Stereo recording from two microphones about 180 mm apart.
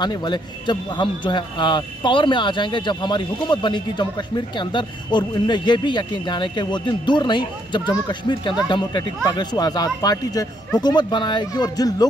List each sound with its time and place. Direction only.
0.0 s a man's voice: 25° left (ahead or behind)